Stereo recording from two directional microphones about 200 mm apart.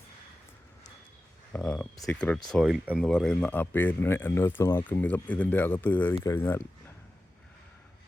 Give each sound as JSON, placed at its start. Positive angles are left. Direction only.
{"t": 1.5, "sound": "speech", "side_deg": 5}